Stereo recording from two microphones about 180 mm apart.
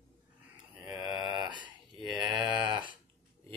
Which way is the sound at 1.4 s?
25° right (ahead or behind).